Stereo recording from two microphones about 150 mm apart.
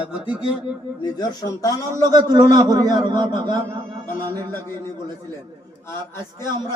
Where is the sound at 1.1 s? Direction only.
25° left (ahead or behind).